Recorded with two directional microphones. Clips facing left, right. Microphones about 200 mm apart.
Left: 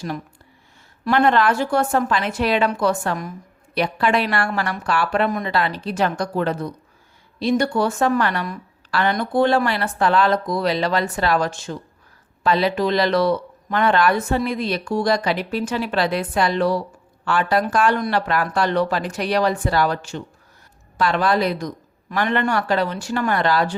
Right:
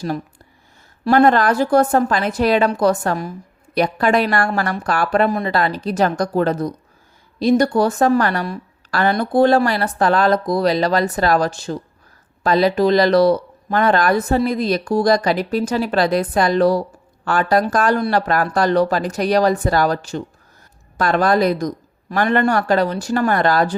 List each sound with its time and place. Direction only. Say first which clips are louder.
1.0 s speech: right 4 dB; 40° right (ahead or behind)